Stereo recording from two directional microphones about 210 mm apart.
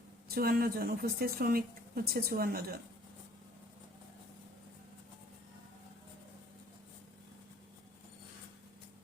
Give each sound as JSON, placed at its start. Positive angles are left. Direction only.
{"t": 0.3, "sound": "a woman's voice", "side_deg": -45}